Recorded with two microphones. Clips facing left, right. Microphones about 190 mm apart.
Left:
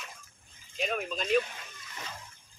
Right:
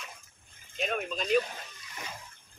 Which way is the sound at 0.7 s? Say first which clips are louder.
Even; centre (ahead or behind).